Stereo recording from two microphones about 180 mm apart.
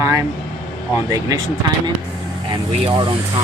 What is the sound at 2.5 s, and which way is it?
Speech, 25° right (ahead or behind).